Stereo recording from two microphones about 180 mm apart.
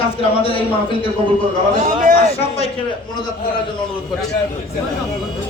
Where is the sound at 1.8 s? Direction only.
45° right (ahead or behind).